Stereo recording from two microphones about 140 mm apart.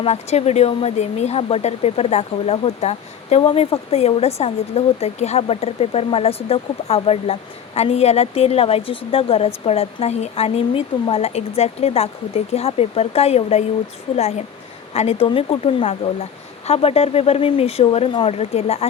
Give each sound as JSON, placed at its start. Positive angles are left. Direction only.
{"t": 0.0, "sound": "speech", "side_deg": 50}